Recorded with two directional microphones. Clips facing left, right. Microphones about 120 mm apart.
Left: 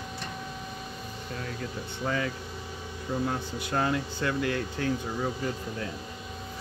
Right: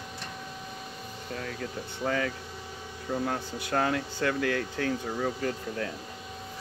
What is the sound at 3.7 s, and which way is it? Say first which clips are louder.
Speech: right 1 dB; 75° right (ahead or behind).